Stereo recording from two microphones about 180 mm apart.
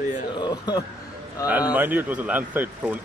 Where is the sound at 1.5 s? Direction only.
10° right (ahead or behind).